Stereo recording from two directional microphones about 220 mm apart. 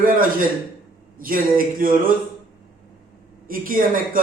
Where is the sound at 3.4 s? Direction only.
40° right (ahead or behind).